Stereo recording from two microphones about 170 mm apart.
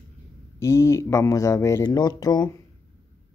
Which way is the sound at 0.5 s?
15° left (ahead or behind).